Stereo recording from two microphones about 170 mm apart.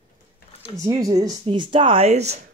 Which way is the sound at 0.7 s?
20° right (ahead or behind).